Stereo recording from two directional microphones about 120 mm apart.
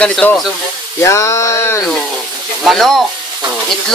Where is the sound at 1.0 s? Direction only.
25° left (ahead or behind).